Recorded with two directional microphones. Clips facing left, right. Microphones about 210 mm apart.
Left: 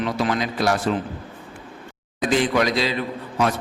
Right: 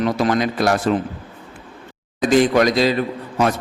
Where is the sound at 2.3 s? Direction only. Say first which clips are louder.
Right 5 dB; 45° right (ahead or behind).